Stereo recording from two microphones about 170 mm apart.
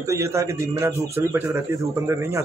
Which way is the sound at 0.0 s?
20° right (ahead or behind).